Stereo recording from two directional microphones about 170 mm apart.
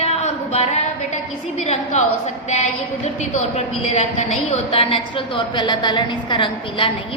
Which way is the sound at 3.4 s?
40° left (ahead or behind).